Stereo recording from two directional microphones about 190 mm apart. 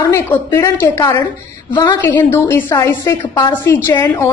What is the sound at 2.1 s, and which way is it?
A woman's voice, 15° left (ahead or behind).